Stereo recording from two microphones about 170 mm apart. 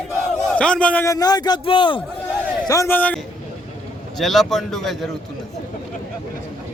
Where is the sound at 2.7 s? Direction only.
15° left (ahead or behind).